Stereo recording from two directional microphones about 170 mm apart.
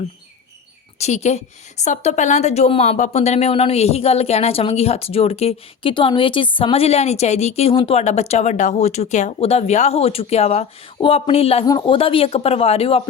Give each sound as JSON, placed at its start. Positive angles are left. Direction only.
{"t": 0.9, "sound": "speech", "side_deg": 40}
{"t": 11.6, "sound": "speech", "side_deg": 25}